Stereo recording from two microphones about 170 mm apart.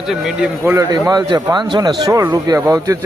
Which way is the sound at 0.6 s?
15° right (ahead or behind).